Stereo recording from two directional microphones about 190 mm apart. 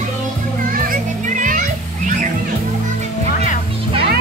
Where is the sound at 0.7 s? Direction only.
45° right (ahead or behind).